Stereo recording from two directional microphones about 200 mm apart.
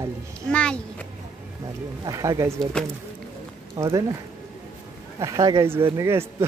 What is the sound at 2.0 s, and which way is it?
Speech, 15° right (ahead or behind).